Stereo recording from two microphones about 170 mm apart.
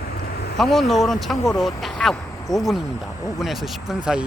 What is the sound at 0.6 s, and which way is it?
Speech, centre (ahead or behind).